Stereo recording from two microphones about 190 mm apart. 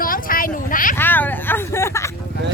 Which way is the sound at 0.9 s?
10° left (ahead or behind).